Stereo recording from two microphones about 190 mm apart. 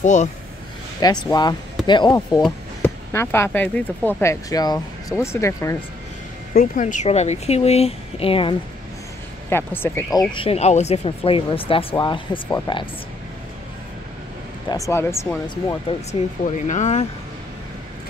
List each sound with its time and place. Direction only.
0.0 s speech: 40° left (ahead or behind)
1.3 s speech: 20° left (ahead or behind)
6.5 s speech: 45° left (ahead or behind)
9.5 s speech: 10° left (ahead or behind)
10.1 s speech: 25° left (ahead or behind)
14.9 s speech: 15° left (ahead or behind)
16.1 s speech: 40° left (ahead or behind)